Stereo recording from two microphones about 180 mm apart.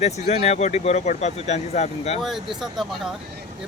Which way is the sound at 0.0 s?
35° left (ahead or behind).